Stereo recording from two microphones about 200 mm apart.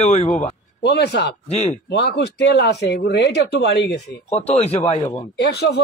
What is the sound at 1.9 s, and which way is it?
Speech, 55° left (ahead or behind).